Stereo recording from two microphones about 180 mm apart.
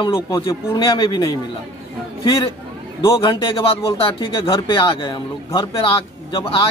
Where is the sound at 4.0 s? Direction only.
30° left (ahead or behind).